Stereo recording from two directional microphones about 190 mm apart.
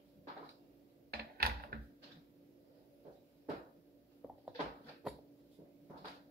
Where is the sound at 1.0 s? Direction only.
55° right (ahead or behind).